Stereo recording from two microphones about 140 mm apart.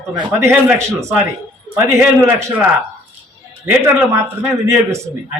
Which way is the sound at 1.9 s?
15° right (ahead or behind).